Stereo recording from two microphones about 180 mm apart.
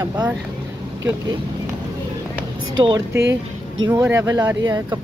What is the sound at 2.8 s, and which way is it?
Speech, 20° right (ahead or behind).